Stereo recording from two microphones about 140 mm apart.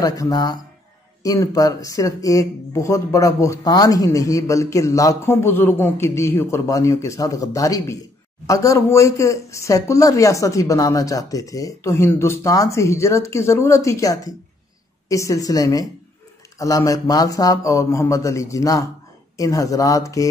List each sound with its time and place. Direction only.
0.0 s speech: 25° left (ahead or behind)